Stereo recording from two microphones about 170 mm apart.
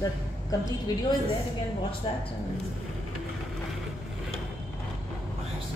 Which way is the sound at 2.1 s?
30° left (ahead or behind).